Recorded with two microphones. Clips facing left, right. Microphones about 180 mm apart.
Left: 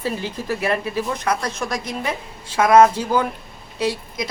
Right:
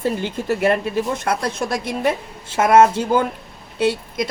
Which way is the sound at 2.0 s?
55° right (ahead or behind).